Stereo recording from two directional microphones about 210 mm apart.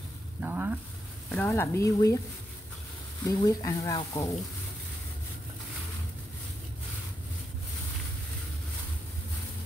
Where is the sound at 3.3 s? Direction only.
20° left (ahead or behind).